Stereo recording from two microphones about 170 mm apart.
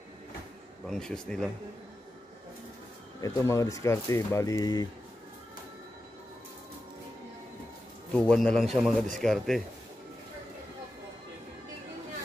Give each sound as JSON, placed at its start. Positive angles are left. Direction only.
{"t": 0.8, "sound": "a man's voice", "side_deg": 5}
{"t": 3.2, "sound": "speech", "side_deg": 20}
{"t": 8.1, "sound": "a man's voice", "side_deg": 5}